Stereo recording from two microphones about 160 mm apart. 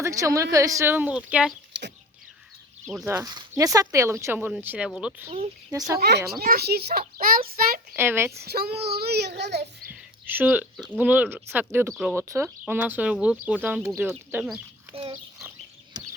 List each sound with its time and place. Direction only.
0.0 s speech: 20° right (ahead or behind)
1.7 s rodents: 90° right
2.8 s speech: centre (ahead or behind)
3.1 s speech: 20° right (ahead or behind)
5.7 s speech: 20° right (ahead or behind)
6.0 s a child's voice: 90° right
6.4 s speech: 75° right (ahead or behind)
7.2 s child singing: 65° right (ahead or behind)
7.9 s speech: 15° right (ahead or behind)
8.3 s a child's voice: 80° right
9.9 s a sound: 10° right (ahead or behind)
10.9 s speech: 10° right (ahead or behind)
14.9 s dog: 30° right (ahead or behind)
15.4 s bird: 20° right (ahead or behind)